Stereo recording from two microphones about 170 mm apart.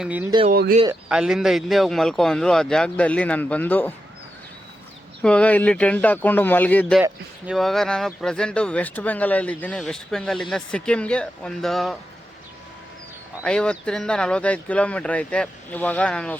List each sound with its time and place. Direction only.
0.0 s speech: 10° right (ahead or behind)
0.5 s speech: 65° right (ahead or behind)
1.0 s speech: 5° right (ahead or behind)
5.2 s speech: 5° left (ahead or behind)
7.0 s speech: 5° right (ahead or behind)
13.4 s speech: 5° left (ahead or behind)